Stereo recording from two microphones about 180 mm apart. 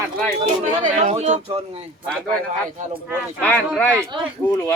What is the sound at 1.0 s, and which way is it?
Speech, 40° right (ahead or behind).